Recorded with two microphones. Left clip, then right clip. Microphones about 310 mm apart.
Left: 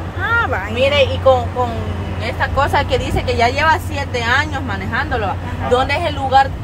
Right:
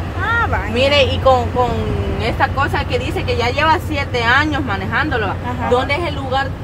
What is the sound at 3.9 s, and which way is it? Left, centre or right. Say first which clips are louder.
Speech: right 2 dB; centre.